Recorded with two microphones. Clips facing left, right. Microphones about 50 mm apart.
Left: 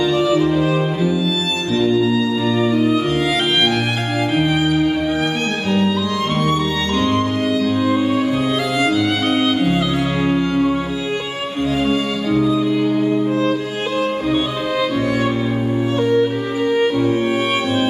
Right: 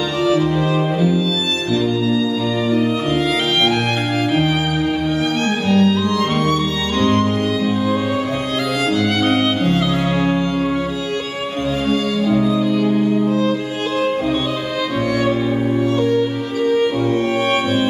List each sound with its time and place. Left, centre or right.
0.2 s music: centre
0.5 s music: centre
1.1 s music: centre
2.7 s music: centre
4.4 s music: centre
5.7 s music: centre
7.0 s music: centre
8.9 s music: centre
12.4 s music: centre
12.6 s music: centre
13.3 s music: left
16.0 s music: left